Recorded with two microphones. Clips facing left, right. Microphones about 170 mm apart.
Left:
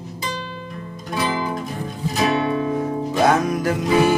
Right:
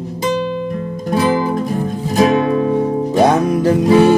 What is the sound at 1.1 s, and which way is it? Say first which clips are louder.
Music: right 8 dB; 45° right (ahead or behind).